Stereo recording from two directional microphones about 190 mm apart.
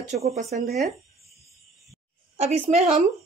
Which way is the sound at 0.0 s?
40° right (ahead or behind).